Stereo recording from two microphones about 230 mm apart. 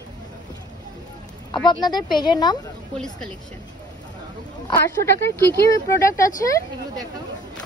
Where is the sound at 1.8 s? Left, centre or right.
Centre.